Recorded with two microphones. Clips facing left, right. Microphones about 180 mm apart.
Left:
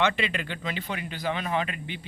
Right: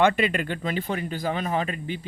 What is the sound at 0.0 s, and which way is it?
Speech, 45° right (ahead or behind).